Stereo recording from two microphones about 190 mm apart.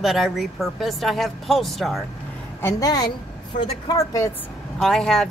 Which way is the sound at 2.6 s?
20° left (ahead or behind).